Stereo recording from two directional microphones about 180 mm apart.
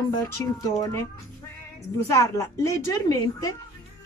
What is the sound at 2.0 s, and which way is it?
A woman's voice, 15° left (ahead or behind).